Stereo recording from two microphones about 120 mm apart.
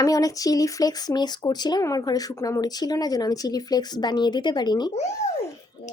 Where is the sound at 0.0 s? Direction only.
30° left (ahead or behind).